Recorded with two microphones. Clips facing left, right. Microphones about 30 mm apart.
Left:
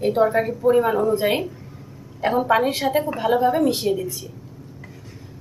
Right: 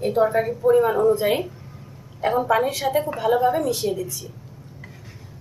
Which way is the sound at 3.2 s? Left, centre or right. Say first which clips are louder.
Even; centre.